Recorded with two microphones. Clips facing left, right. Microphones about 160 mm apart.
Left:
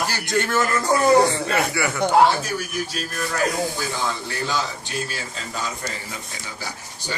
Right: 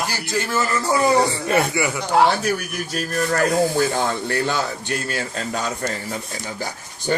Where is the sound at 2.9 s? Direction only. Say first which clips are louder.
Right 9 dB; 45° right (ahead or behind).